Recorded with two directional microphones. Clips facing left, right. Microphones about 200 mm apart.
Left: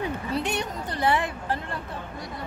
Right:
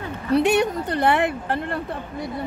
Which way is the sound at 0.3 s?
65° right (ahead or behind).